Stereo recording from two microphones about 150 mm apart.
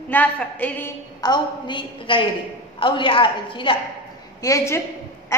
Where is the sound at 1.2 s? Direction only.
30° left (ahead or behind).